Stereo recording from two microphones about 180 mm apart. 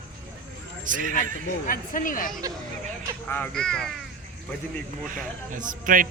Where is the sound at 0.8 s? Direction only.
45° right (ahead or behind).